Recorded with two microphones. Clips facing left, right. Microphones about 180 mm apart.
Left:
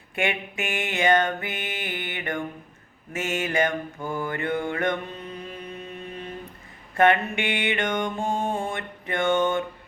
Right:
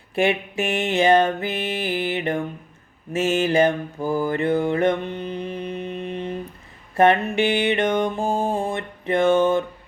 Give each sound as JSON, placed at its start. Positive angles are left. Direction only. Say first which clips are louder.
{"t": 0.2, "sound": "music", "louder": "right 7 dB", "side_deg": -30}
{"t": 5.0, "sound": "music", "louder": "right 8 dB", "side_deg": -80}
{"t": 6.9, "sound": "a sound", "louder": "right 3 dB", "side_deg": -30}
{"t": 7.6, "sound": "music", "louder": "right 6 dB", "side_deg": -30}